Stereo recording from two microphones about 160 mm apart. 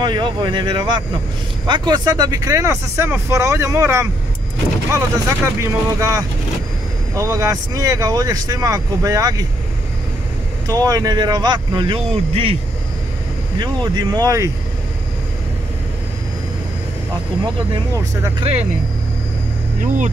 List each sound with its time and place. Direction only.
0.0 s speech: 30° right (ahead or behind)
10.7 s speech: 20° right (ahead or behind)
13.6 s speech: 25° right (ahead or behind)
17.9 s speech: 20° right (ahead or behind)
18.4 s speech: 40° right (ahead or behind)